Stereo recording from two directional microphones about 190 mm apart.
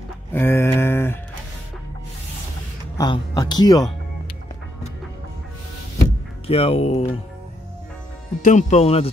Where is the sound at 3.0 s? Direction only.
20° left (ahead or behind).